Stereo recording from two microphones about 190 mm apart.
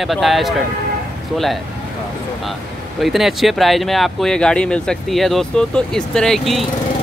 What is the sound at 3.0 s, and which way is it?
Speech, centre (ahead or behind).